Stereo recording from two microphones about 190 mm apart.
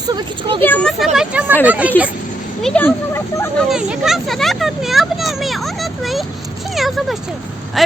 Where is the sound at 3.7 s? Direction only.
5° right (ahead or behind).